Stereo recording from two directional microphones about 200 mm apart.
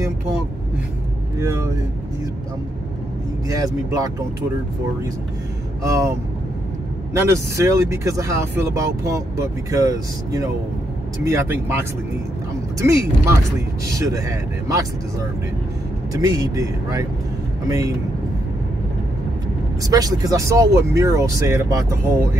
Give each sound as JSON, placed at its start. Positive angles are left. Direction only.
{"t": 1.4, "sound": "speech", "side_deg": -15}
{"t": 3.4, "sound": "speech", "side_deg": -15}
{"t": 5.8, "sound": "speech", "side_deg": -15}
{"t": 7.2, "sound": "speech", "side_deg": -15}
{"t": 16.1, "sound": "speech", "side_deg": -20}
{"t": 19.8, "sound": "speech", "side_deg": -20}